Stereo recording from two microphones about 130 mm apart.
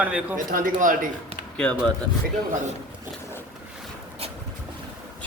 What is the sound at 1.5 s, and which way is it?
Speech, 5° left (ahead or behind).